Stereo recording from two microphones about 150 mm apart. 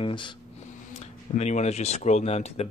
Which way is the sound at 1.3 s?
45° left (ahead or behind).